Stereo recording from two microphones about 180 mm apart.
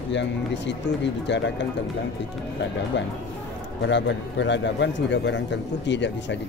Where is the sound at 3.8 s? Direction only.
85° left.